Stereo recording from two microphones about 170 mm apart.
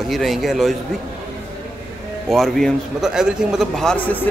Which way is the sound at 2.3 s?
Centre (ahead or behind).